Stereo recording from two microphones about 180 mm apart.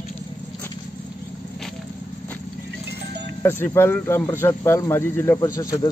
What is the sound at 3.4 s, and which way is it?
A man's voice, 10° left (ahead or behind).